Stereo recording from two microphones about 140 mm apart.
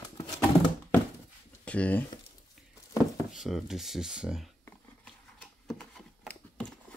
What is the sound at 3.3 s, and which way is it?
Speech, centre (ahead or behind).